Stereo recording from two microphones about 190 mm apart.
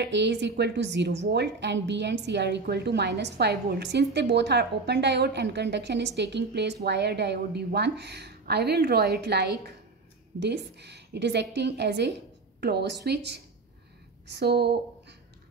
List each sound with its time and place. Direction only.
0.0 s a woman's voice: 65° right (ahead or behind)